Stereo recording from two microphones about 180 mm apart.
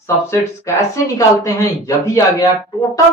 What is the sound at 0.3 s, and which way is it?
Speech, 15° left (ahead or behind).